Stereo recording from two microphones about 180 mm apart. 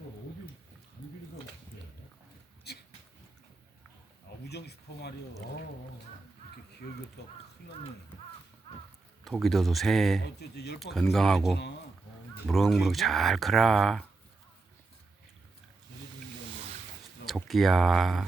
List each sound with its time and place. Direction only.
2.7 s a sound: 65° left (ahead or behind)
4.4 s a sound: 65° left (ahead or behind)
7.2 s speech: 65° left (ahead or behind)
9.2 s speech: centre (ahead or behind)
10.5 s speech: 65° left (ahead or behind)
11.1 s speech: centre (ahead or behind)
17.2 s speech: centre (ahead or behind)